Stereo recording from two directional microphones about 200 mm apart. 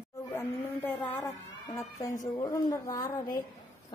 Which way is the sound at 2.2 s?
20° left (ahead or behind).